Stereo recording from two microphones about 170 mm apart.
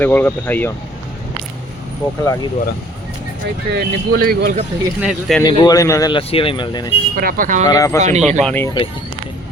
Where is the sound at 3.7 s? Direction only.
65° right (ahead or behind).